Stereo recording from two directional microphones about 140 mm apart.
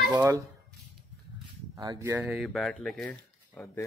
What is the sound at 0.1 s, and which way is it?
Speech, 15° right (ahead or behind).